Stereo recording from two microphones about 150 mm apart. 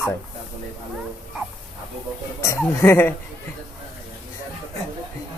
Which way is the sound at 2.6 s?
15° left (ahead or behind).